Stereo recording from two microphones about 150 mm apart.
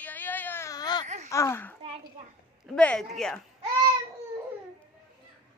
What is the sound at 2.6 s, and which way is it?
Speech, 5° left (ahead or behind).